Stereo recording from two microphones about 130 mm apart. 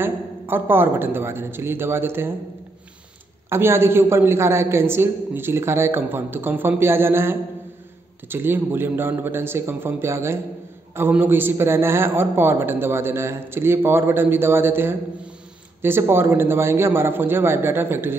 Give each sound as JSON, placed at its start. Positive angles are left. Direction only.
{"t": 0.0, "sound": "speech", "side_deg": -15}
{"t": 3.4, "sound": "a woman's voice", "side_deg": -20}